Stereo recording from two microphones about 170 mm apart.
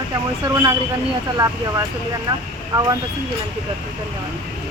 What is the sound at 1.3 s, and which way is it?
Speech, 20° right (ahead or behind).